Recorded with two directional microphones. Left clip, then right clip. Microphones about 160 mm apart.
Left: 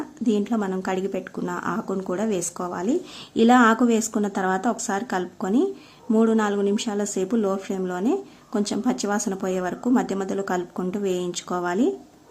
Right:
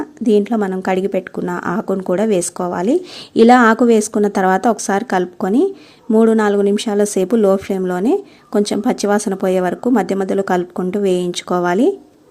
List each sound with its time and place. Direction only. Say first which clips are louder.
0.3 s speech: right 10 dB; 35° right (ahead or behind)